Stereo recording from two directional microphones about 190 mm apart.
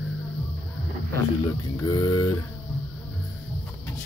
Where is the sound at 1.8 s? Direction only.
20° left (ahead or behind).